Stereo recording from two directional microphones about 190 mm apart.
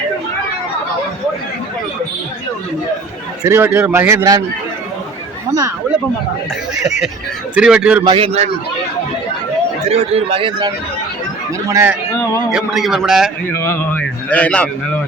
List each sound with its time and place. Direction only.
3.4 s speech: 15° right (ahead or behind)
5.5 s speech: 20° right (ahead or behind)
6.8 s a man's voice: 5° right (ahead or behind)
8.0 s a man's voice: 30° right (ahead or behind)
9.9 s a man's voice: 30° right (ahead or behind)
11.7 s speech: 10° right (ahead or behind)
12.1 s a man's voice: 15° left (ahead or behind)
12.5 s a man's voice: 5° right (ahead or behind)
13.5 s a man's voice: 10° left (ahead or behind)